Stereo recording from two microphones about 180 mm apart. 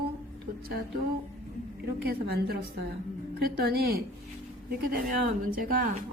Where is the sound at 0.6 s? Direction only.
60° right (ahead or behind).